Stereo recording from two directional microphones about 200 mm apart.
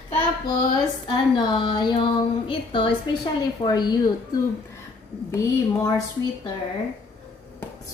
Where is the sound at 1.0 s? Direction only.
25° left (ahead or behind).